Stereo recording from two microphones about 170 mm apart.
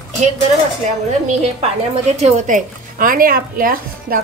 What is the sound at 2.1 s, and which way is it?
Speech, 45° right (ahead or behind).